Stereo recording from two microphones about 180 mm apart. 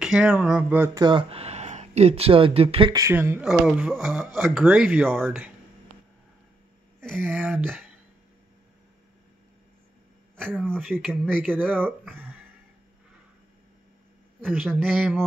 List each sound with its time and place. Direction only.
0.0 s speech: 5° right (ahead or behind); by 2.9 s 35° right (ahead or behind)
2.9 s speech: 15° right (ahead or behind); by 5.3 s centre (ahead or behind)
7.2 s speech: 10° right (ahead or behind)
10.3 s speech: 5° left (ahead or behind)
14.4 s a man's voice: 5° right (ahead or behind)